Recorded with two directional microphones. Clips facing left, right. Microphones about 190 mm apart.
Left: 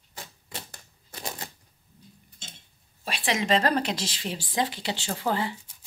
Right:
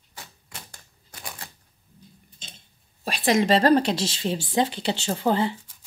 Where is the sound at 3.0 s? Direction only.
40° right (ahead or behind); by 5.6 s 25° right (ahead or behind).